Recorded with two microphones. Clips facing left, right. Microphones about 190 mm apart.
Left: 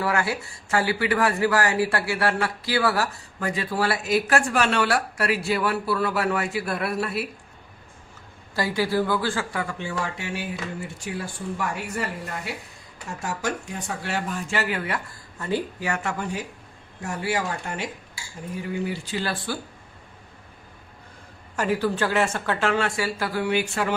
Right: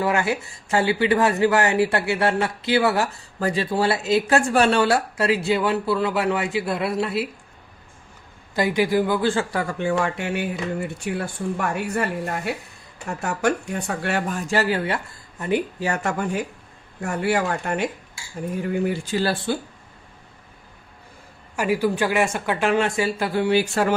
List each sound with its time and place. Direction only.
0.0 s speech: 20° right (ahead or behind)
8.5 s speech: 20° right (ahead or behind)
9.7 s speech: 55° right (ahead or behind); by 16.1 s 35° right (ahead or behind)
17.0 s speech: 60° right (ahead or behind)
19.2 s speech: 25° right (ahead or behind)
21.5 s speech: 10° right (ahead or behind); by 23.9 s 35° right (ahead or behind)